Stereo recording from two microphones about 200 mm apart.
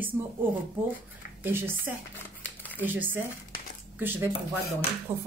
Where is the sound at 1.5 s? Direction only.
10° right (ahead or behind).